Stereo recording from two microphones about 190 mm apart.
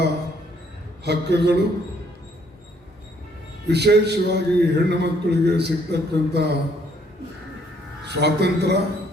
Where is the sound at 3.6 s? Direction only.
60° right (ahead or behind).